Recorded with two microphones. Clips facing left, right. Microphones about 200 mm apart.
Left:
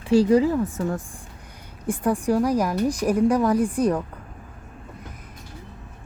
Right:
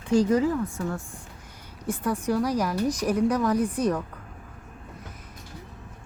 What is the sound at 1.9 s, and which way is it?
A woman's voice, 10° left (ahead or behind).